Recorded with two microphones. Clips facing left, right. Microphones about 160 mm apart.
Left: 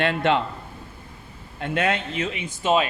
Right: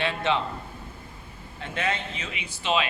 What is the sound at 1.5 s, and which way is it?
Speech, 55° left (ahead or behind).